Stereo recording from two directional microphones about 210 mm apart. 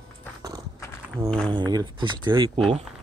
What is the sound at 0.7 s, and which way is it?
Walk, 10° left (ahead or behind).